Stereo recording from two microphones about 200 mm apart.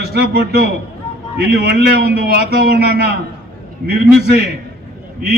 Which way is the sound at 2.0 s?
50° right (ahead or behind).